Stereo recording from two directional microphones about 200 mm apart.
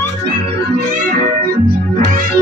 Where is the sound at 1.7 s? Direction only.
50° right (ahead or behind).